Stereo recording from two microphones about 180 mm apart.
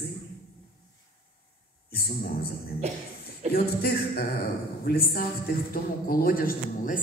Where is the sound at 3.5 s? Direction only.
55° left (ahead or behind).